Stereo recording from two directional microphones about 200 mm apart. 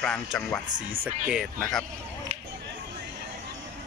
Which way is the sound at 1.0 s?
5° right (ahead or behind).